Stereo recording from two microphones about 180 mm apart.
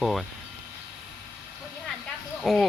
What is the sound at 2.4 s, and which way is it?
Speech, centre (ahead or behind).